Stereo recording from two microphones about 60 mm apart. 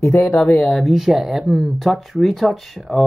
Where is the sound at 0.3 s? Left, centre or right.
Centre.